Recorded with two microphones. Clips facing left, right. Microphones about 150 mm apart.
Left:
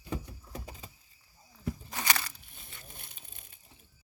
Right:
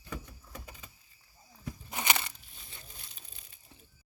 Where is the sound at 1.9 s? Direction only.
20° right (ahead or behind).